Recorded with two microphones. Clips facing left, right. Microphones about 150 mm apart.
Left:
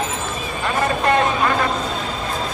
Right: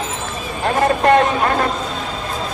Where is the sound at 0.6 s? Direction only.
55° right (ahead or behind).